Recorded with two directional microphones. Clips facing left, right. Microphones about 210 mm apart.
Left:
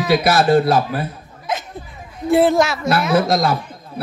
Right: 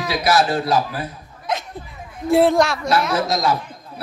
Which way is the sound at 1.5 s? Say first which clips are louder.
Even; 5° left (ahead or behind).